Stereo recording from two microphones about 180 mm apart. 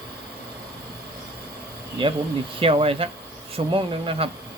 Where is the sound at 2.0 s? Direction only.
30° right (ahead or behind).